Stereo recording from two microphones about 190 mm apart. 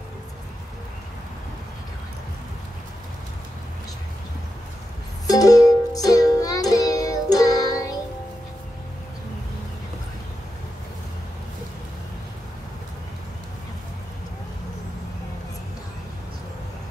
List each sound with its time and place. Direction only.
5.2 s music: 20° left (ahead or behind)